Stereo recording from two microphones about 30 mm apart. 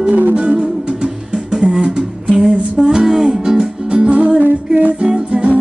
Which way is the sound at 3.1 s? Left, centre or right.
Centre.